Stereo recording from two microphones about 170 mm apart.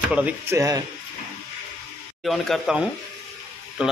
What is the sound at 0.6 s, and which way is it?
Speech, 20° right (ahead or behind).